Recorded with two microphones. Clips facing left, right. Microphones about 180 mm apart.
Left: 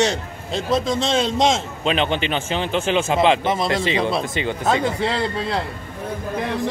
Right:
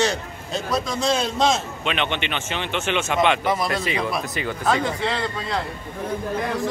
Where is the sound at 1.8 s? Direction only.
35° left (ahead or behind).